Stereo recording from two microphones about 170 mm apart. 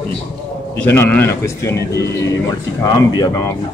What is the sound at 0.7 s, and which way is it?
Speech, 10° left (ahead or behind).